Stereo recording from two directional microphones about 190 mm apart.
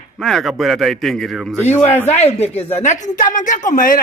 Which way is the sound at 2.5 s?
35° left (ahead or behind).